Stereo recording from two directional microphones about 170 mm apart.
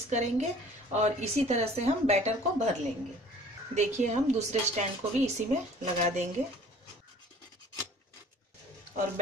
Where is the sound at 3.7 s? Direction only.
45° right (ahead or behind).